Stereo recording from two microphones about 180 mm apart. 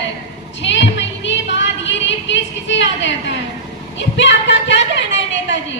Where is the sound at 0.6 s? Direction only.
90° left.